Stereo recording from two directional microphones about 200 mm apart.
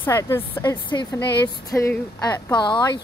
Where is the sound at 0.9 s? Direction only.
20° left (ahead or behind).